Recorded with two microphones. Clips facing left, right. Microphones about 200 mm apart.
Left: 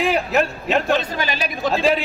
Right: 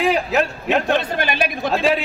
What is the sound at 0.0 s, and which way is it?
Speech, centre (ahead or behind).